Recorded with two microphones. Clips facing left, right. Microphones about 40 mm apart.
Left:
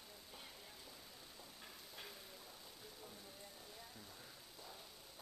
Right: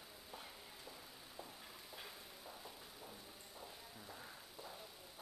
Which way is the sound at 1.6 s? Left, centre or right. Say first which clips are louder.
Right 1 dB; centre.